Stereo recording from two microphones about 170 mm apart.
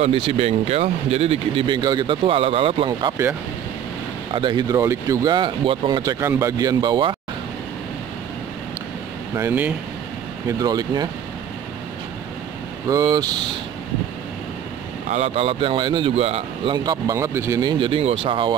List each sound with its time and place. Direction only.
0.0 s speech: 35° right (ahead or behind)
4.3 s speech: 25° right (ahead or behind)
9.3 s speech: 15° right (ahead or behind)
10.6 s speech: 25° right (ahead or behind)
12.9 s speech: 20° right (ahead or behind)
15.0 s speech: 40° right (ahead or behind)
16.7 s speech: 25° right (ahead or behind)